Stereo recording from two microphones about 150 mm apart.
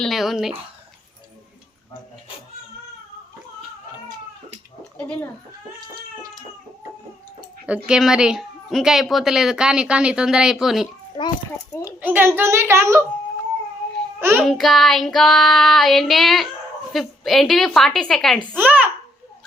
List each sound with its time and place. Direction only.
0.0 s a child's voice: centre (ahead or behind)
4.9 s a child's voice: 10° left (ahead or behind)
7.9 s a child's voice: 5° right (ahead or behind)
11.2 s a child's voice: 30° left (ahead or behind)
11.9 s a child's voice: 10° right (ahead or behind)
14.2 s a child's voice: 15° right (ahead or behind)
14.4 s a child's voice: centre (ahead or behind)
18.5 s a child's voice: 10° right (ahead or behind)